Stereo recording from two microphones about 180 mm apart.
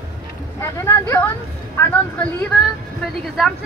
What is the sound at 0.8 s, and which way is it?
A woman's voice, 15° left (ahead or behind).